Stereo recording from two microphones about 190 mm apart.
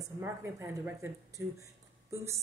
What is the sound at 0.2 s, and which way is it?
Speech, 10° right (ahead or behind).